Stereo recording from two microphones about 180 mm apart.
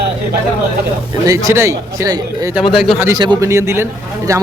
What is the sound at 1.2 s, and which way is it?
A man's voice, 15° right (ahead or behind).